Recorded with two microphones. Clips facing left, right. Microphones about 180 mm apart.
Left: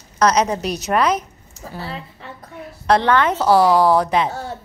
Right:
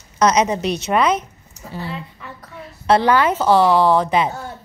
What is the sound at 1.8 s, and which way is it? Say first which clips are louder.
Speech: right 2 dB; 35° left (ahead or behind).